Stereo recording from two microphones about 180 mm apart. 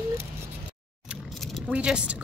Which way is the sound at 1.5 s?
Centre (ahead or behind).